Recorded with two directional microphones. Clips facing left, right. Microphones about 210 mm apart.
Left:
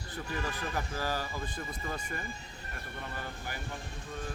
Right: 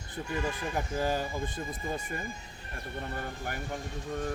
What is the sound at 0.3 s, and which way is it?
Speech, 20° right (ahead or behind).